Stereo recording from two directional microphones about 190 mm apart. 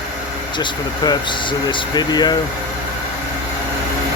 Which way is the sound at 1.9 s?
20° left (ahead or behind).